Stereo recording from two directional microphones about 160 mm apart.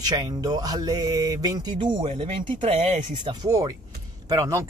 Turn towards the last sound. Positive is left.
turn(degrees=-20)  # may be behind; listen again after turning